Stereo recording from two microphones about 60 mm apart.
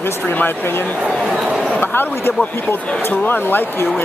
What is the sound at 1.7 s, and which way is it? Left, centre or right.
Speech, left.